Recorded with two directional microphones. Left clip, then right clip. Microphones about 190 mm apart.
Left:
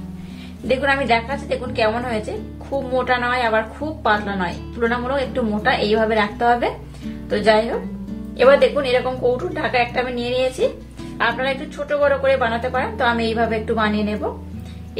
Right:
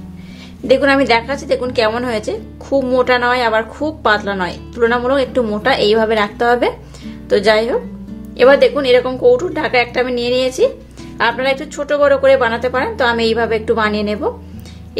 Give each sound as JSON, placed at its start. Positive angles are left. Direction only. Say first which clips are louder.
{"t": 0.7, "sound": "a woman's voice", "louder": "right 6 dB", "side_deg": -50}